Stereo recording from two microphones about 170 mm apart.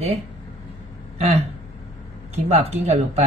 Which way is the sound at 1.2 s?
40° right (ahead or behind).